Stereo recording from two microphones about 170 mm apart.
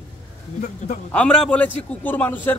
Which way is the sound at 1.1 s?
5° left (ahead or behind).